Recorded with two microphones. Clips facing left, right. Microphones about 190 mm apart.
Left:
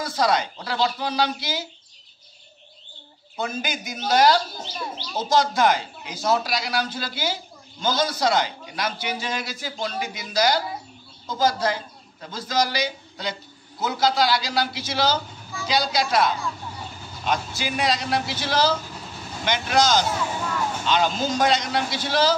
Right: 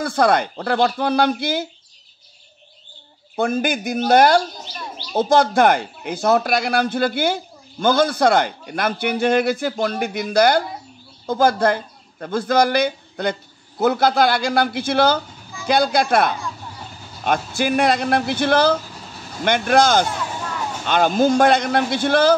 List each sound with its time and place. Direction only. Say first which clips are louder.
0.0 s speech: right 5 dB; 55° right (ahead or behind)
3.3 s speech: right 9 dB; 55° right (ahead or behind)